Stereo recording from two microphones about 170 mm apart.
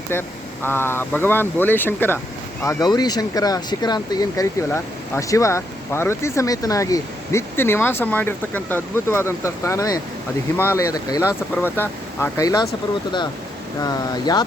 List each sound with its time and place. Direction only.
0.1 s speech: 15° left (ahead or behind)
13.8 s speech: 25° left (ahead or behind)